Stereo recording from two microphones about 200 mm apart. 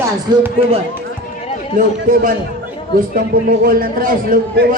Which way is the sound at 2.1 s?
45° right (ahead or behind).